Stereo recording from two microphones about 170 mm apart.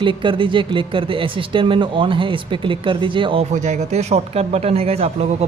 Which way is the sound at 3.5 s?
45° right (ahead or behind).